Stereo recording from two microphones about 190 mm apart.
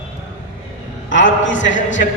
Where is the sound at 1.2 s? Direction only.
75° left (ahead or behind).